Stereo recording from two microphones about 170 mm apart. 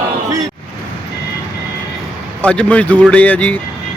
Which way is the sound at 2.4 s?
5° left (ahead or behind).